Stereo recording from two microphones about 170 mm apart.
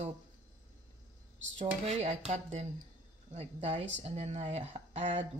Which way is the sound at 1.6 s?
40° right (ahead or behind).